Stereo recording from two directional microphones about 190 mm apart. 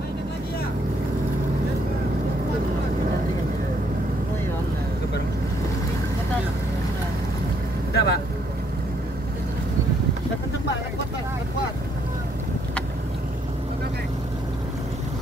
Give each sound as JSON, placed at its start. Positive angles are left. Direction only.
{"t": 7.9, "sound": "boat", "side_deg": 60}